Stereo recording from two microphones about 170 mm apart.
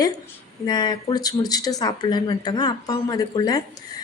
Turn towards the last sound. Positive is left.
turn(degrees=20)  # may be behind; listen again after turning